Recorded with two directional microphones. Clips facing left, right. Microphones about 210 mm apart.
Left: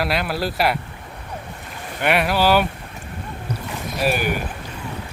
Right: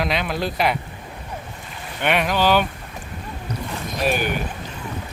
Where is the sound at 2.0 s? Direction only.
5° left (ahead or behind).